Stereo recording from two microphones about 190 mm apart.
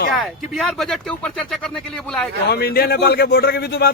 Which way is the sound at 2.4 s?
55° left (ahead or behind).